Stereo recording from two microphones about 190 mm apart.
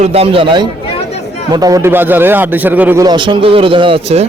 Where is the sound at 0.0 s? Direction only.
30° right (ahead or behind).